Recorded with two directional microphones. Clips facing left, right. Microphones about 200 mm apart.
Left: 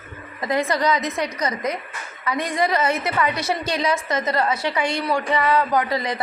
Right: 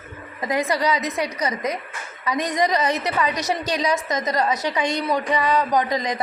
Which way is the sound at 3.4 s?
40° right (ahead or behind).